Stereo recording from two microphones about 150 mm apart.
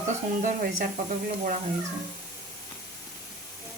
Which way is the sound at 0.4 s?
65° right (ahead or behind).